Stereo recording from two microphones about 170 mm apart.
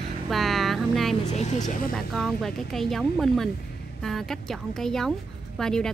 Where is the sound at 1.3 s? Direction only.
40° left (ahead or behind).